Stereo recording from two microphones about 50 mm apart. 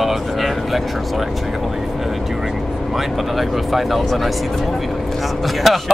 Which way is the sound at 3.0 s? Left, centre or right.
Centre.